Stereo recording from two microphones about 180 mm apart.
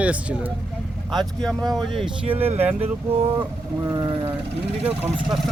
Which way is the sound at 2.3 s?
10° right (ahead or behind).